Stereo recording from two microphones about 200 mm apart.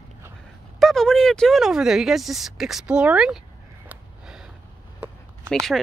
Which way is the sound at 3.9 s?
5° right (ahead or behind).